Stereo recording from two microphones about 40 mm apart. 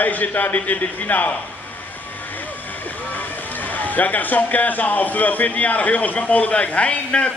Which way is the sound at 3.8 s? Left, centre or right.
Left.